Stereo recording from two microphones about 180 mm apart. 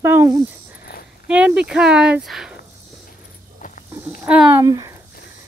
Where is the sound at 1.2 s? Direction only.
5° right (ahead or behind).